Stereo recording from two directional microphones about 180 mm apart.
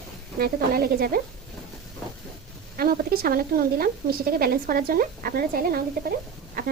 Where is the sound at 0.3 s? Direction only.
55° right (ahead or behind).